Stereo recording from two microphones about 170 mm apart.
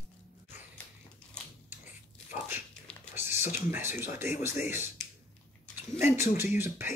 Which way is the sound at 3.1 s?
15° right (ahead or behind).